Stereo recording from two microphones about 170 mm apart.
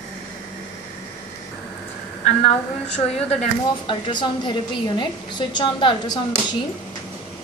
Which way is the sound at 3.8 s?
30° left (ahead or behind).